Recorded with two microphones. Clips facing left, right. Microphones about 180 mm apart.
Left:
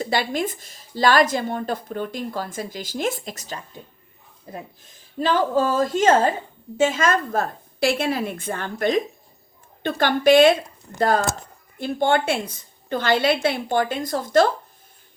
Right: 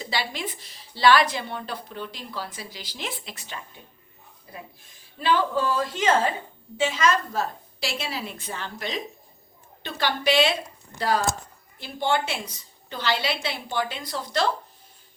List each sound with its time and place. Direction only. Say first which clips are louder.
0.0 s a woman's voice: left 7 dB; 50° left (ahead or behind)